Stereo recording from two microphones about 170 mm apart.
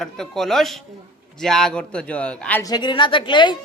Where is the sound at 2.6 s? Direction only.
25° left (ahead or behind).